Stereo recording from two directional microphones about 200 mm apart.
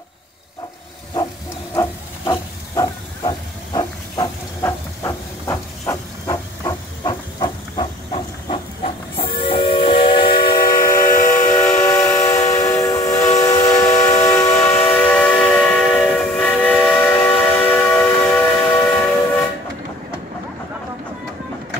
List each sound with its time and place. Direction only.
1.7 s a sound: 15° left (ahead or behind)
2.7 s hiss: 15° left (ahead or behind)
11.1 s steam whistle: 40° left (ahead or behind)
11.4 s steam whistle: 10° left (ahead or behind)